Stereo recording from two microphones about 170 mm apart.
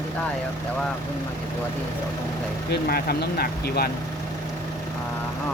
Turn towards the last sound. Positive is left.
turn(degrees=65)  # may be behind; listen again after turning